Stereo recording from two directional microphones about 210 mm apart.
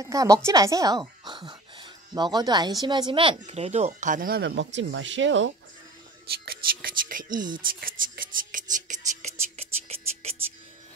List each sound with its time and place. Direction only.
0.0 s a woman's voice: 15° right (ahead or behind); by 5.5 s 60° right (ahead or behind)
6.4 s speech: 45° right (ahead or behind)
7.3 s speech: 20° right (ahead or behind)
7.8 s whispering: 40° right (ahead or behind)